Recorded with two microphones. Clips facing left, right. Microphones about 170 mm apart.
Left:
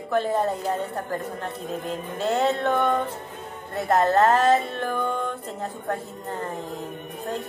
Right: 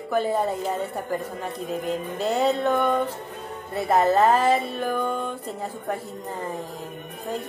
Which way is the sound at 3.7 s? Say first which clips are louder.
Even; 5° right (ahead or behind).